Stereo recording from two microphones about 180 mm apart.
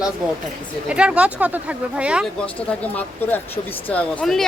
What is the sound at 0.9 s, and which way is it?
Speech, 5° right (ahead or behind).